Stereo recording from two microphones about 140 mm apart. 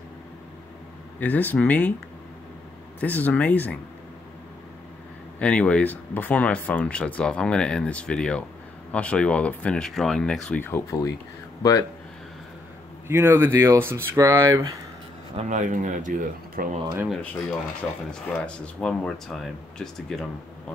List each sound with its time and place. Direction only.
1.2 s speech: 10° left (ahead or behind)
3.0 s speech: 10° left (ahead or behind)
5.4 s speech: 10° left (ahead or behind)
10.6 s speech: 20° left (ahead or behind)
13.1 s speech: 15° right (ahead or behind)
15.4 s speech: 60° right (ahead or behind)
16.8 s speech: 20° right (ahead or behind)
18.3 s speech: 10° left (ahead or behind)